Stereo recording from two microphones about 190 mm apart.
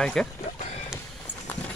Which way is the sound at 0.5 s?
40° left (ahead or behind).